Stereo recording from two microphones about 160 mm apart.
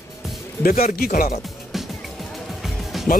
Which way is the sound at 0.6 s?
60° left (ahead or behind).